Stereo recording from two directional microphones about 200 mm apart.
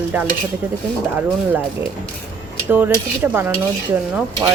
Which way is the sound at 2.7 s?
10° right (ahead or behind).